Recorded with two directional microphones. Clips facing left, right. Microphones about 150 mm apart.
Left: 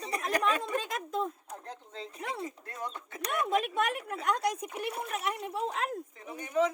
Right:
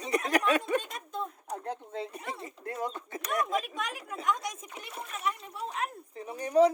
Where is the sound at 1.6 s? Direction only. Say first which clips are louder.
Right 7 dB; 60° right (ahead or behind).